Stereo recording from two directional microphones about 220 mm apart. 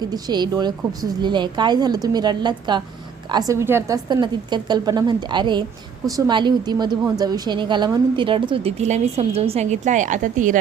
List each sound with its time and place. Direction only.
0.1 s a woman's voice: 20° right (ahead or behind); by 10.6 s 35° right (ahead or behind)